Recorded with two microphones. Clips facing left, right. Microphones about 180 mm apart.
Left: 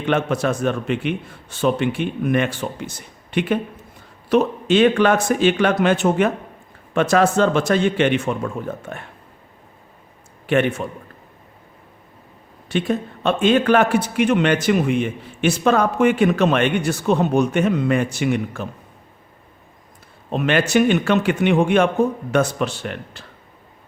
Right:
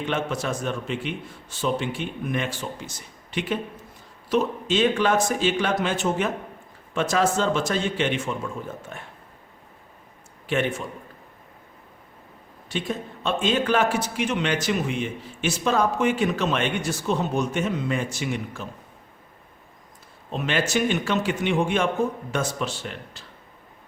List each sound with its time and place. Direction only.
0.0 s a man's voice: 60° left (ahead or behind)
10.4 s a man's voice: 60° left (ahead or behind)
12.6 s a man's voice: 60° left (ahead or behind)
20.3 s a man's voice: 60° left (ahead or behind)